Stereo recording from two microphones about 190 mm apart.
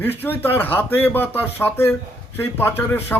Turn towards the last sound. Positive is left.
turn(degrees=10)  # may be behind; listen again after turning